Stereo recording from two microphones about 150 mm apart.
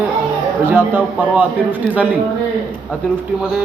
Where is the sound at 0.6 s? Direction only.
15° right (ahead or behind).